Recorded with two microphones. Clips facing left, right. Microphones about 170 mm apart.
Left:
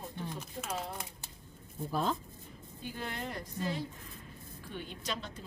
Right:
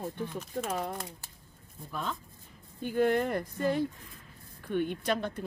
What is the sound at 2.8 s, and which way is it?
A man's voice, 55° right (ahead or behind).